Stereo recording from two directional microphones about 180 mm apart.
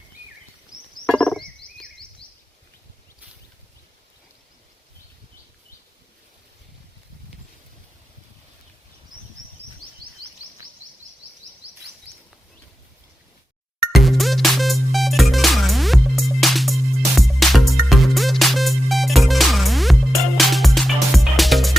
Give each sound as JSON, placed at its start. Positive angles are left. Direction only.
{"t": 1.0, "sound": "frog", "side_deg": 5}
{"t": 2.2, "sound": "a sound", "side_deg": 30}
{"t": 13.9, "sound": "music", "side_deg": 0}